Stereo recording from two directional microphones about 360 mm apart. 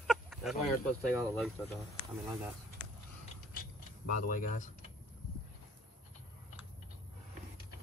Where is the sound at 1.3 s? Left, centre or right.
Centre.